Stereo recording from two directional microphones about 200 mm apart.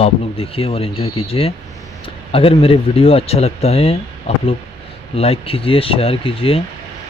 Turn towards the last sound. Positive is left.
turn(degrees=30)  # may be behind; listen again after turning